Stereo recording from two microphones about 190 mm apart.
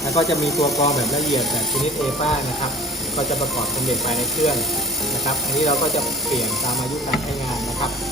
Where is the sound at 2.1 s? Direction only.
35° left (ahead or behind).